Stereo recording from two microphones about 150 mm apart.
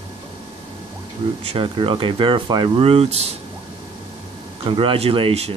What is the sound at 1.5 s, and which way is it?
Speech, 35° right (ahead or behind).